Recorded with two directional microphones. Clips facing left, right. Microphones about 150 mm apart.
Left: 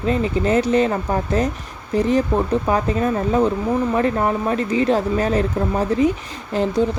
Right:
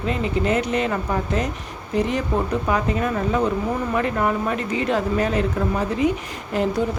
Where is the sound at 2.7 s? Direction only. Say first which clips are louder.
Left 3 dB; 35° left (ahead or behind).